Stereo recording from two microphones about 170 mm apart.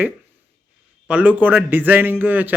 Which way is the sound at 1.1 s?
10° right (ahead or behind).